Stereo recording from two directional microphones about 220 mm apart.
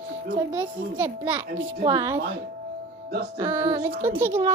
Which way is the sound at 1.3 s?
20° right (ahead or behind).